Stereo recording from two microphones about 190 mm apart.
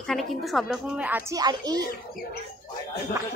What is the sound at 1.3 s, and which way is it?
Speech, 20° right (ahead or behind).